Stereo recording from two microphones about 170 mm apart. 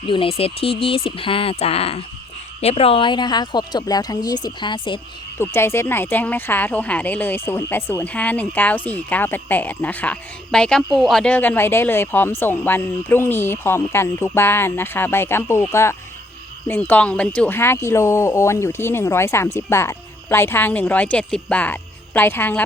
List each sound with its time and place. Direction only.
0.1 s speech: 35° left (ahead or behind)
5.4 s speech: 15° left (ahead or behind)